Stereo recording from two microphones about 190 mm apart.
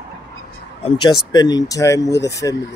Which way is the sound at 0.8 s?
20° left (ahead or behind).